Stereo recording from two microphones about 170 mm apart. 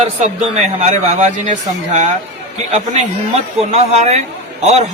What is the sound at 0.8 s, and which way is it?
Speech, 40° right (ahead or behind).